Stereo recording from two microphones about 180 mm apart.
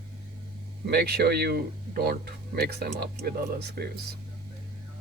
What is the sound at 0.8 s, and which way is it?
Speech, 60° right (ahead or behind).